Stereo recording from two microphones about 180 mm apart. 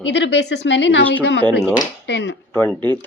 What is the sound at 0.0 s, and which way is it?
A woman's voice, 75° left (ahead or behind).